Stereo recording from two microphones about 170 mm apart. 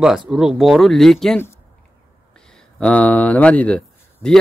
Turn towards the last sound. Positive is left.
turn(degrees=5)  # may be behind; listen again after turning